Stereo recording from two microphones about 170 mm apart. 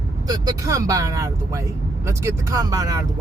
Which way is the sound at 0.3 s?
20° right (ahead or behind).